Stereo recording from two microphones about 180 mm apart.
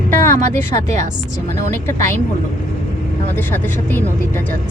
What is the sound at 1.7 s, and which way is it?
Speech, 15° left (ahead or behind).